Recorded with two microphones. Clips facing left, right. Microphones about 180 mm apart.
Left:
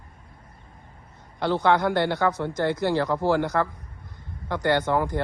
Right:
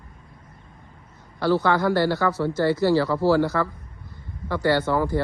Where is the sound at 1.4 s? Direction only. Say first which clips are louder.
Right 4 dB; 20° left (ahead or behind).